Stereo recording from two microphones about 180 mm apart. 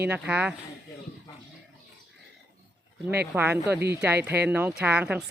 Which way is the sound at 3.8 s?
65° right (ahead or behind).